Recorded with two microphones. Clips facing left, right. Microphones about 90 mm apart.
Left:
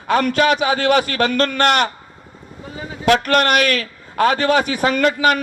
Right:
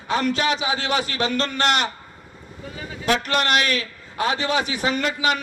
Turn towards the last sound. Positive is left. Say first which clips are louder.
# left 7 dB
turn(degrees=50)  # may be behind; listen again after turning